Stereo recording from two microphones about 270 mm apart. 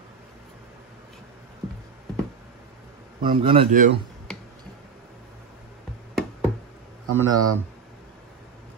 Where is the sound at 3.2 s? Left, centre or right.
Centre.